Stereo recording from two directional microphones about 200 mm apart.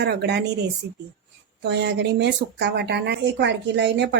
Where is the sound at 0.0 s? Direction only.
55° right (ahead or behind).